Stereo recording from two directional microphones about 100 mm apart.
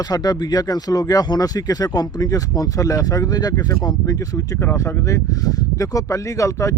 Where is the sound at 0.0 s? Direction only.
40° left (ahead or behind).